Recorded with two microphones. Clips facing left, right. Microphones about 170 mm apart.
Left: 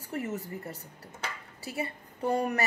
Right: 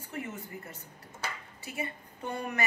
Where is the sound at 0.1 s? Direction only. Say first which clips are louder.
Left 5 dB; 40° left (ahead or behind).